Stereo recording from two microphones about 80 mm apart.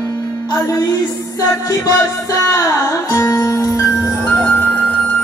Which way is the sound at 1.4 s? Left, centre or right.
Left.